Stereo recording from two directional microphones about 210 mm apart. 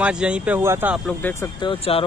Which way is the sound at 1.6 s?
25° left (ahead or behind).